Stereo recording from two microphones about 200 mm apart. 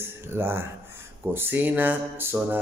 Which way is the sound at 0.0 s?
10° right (ahead or behind).